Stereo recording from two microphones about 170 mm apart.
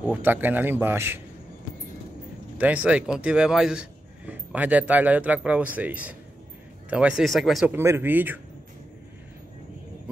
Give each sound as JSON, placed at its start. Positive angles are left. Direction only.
{"t": 0.0, "sound": "a man's voice", "side_deg": -10}
{"t": 2.5, "sound": "a man's voice", "side_deg": -10}
{"t": 7.7, "sound": "a man's voice", "side_deg": -15}